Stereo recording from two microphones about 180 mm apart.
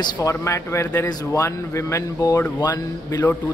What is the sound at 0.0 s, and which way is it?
Speech, 15° left (ahead or behind).